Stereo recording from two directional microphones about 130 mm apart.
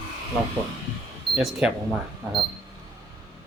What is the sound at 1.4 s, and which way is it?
Speech, centre (ahead or behind).